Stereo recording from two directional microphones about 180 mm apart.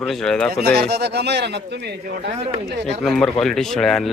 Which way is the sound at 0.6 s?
60° right (ahead or behind).